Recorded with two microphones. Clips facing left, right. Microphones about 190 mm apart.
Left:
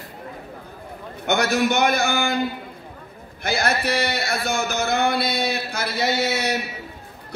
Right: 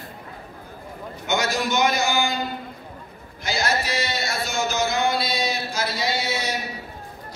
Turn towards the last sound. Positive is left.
turn(degrees=65)  # may be behind; listen again after turning